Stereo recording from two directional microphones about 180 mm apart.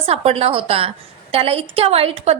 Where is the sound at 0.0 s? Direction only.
35° right (ahead or behind).